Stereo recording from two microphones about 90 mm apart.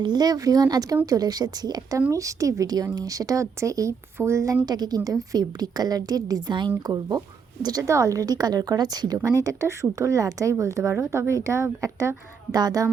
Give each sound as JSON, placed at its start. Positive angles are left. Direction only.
{"t": 0.0, "sound": "a woman's voice", "side_deg": -50}
{"t": 4.6, "sound": "a woman's voice", "side_deg": -50}
{"t": 9.2, "sound": "a woman's voice", "side_deg": -40}